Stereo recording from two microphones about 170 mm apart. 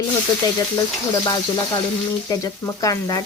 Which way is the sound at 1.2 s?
25° left (ahead or behind).